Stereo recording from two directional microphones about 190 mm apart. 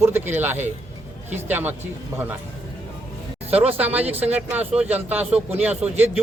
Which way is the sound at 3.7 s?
10° right (ahead or behind).